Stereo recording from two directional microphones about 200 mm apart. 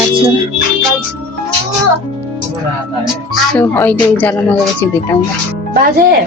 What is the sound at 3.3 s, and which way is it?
Speech, 5° left (ahead or behind).